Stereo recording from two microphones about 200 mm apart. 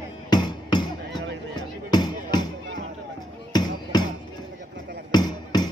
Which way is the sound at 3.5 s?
20° left (ahead or behind).